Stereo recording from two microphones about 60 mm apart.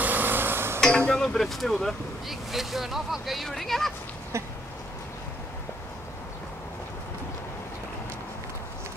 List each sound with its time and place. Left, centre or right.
0.0 s stir: right
0.7 s speech: centre